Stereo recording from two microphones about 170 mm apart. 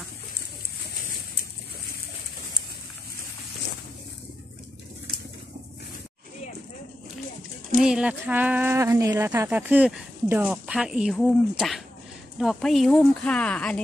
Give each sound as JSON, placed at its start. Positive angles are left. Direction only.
{"t": 7.8, "sound": "speech", "side_deg": -5}